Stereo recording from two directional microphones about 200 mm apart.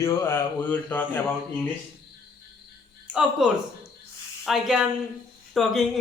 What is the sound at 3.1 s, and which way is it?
Speech, 5° right (ahead or behind).